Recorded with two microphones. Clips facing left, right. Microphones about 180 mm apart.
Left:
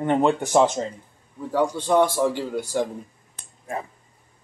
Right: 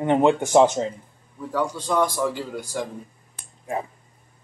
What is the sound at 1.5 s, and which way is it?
Speech, 25° left (ahead or behind).